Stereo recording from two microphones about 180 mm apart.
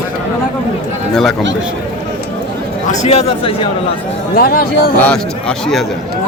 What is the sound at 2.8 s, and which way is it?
Speech, 35° left (ahead or behind).